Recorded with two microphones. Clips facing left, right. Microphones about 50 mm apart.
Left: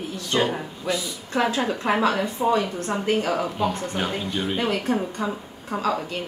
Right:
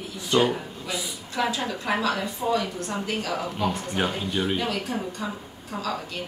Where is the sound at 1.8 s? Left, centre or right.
Left.